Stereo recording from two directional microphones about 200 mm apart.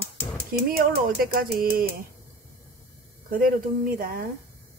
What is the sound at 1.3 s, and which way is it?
Speech, 50° right (ahead or behind).